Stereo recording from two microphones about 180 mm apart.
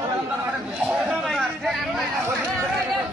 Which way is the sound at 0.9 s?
5° right (ahead or behind).